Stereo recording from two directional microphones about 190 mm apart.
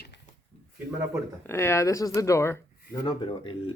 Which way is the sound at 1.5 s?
15° left (ahead or behind).